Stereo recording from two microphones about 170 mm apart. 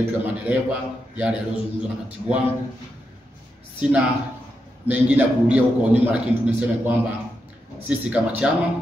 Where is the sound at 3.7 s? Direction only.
5° right (ahead or behind).